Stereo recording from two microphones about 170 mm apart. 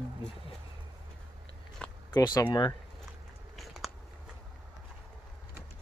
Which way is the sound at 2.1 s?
20° left (ahead or behind).